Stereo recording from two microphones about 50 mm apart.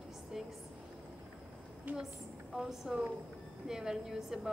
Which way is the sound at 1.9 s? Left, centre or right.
Right.